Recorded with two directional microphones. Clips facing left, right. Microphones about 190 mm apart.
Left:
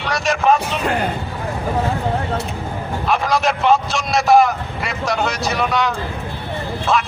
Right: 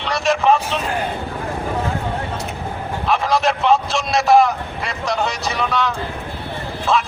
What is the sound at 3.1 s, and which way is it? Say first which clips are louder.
Vehicle: even; centre (ahead or behind).